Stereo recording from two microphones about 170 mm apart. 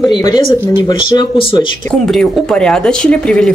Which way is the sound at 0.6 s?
25° left (ahead or behind).